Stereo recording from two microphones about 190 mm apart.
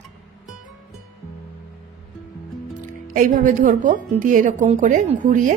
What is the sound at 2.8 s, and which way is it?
Speech, 45° right (ahead or behind).